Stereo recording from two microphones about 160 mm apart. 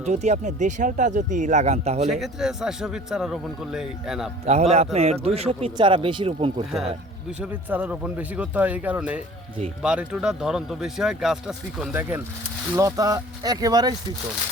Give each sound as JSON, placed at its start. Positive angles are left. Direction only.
{"t": 0.0, "sound": "speech", "side_deg": -45}
{"t": 2.0, "sound": "speech", "side_deg": 0}
{"t": 4.4, "sound": "speech", "side_deg": -40}
{"t": 7.3, "sound": "speech", "side_deg": -5}